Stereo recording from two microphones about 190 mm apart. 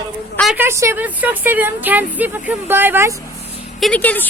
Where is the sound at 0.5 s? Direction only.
15° right (ahead or behind).